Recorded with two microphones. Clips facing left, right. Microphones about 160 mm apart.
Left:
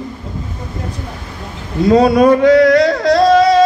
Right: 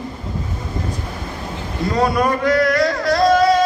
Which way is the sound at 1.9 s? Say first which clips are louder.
Left 9 dB; 75° left (ahead or behind).